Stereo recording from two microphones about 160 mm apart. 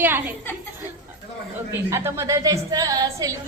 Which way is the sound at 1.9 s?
15° right (ahead or behind).